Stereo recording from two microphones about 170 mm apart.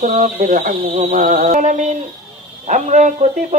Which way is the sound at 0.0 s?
50° right (ahead or behind).